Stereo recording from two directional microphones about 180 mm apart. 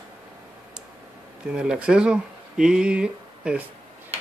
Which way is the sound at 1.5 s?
5° right (ahead or behind).